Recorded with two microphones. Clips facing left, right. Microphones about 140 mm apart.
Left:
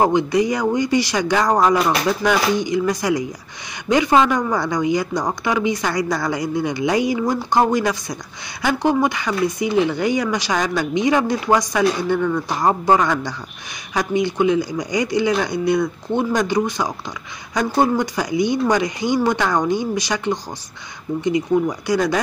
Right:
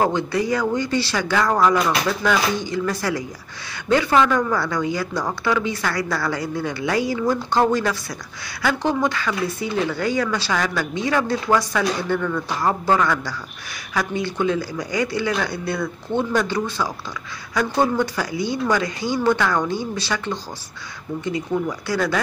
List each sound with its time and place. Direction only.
0.0 s speech: 15° left (ahead or behind)
21.8 s speech: 15° left (ahead or behind)